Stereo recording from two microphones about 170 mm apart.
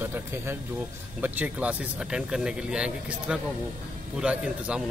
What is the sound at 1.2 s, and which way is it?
Speech, 10° right (ahead or behind).